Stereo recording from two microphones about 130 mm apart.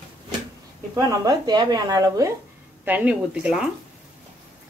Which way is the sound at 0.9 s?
30° right (ahead or behind).